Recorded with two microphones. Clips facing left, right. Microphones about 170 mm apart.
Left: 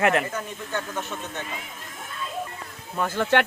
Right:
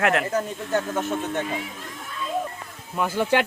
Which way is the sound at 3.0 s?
10° right (ahead or behind).